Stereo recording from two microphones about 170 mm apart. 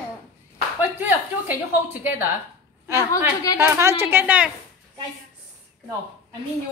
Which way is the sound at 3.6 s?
15° right (ahead or behind).